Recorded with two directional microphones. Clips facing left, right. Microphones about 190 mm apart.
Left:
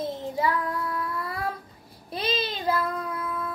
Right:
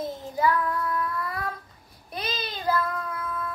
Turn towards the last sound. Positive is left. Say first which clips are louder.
# left 1 dB
turn(degrees=25)  # may be behind; listen again after turning